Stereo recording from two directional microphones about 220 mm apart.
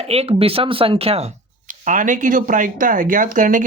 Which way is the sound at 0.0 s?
30° right (ahead or behind).